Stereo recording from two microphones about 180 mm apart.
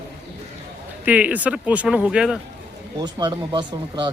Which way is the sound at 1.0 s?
10° right (ahead or behind).